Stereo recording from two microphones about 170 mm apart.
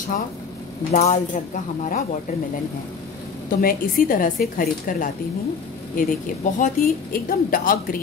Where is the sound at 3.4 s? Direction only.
55° left (ahead or behind).